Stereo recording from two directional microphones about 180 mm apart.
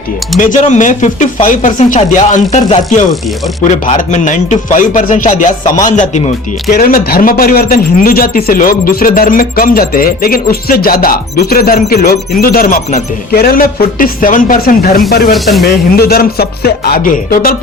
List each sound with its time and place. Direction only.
0.3 s speech: 45° left (ahead or behind)
2.0 s music: 40° left (ahead or behind)
3.1 s speech: centre (ahead or behind)
3.8 s speech: 45° left (ahead or behind)
6.7 s speech: 55° left (ahead or behind)
15.3 s speech: centre (ahead or behind)
16.0 s music: 60° left (ahead or behind)